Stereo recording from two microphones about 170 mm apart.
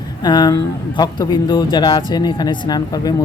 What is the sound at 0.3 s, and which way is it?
A man's voice, 25° left (ahead or behind).